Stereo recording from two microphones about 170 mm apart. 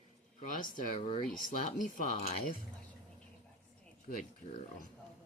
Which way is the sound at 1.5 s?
50° left (ahead or behind).